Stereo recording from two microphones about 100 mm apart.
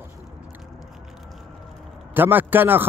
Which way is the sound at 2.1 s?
20° right (ahead or behind).